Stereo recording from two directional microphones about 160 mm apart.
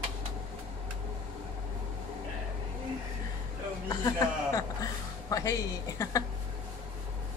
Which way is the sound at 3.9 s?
20° left (ahead or behind).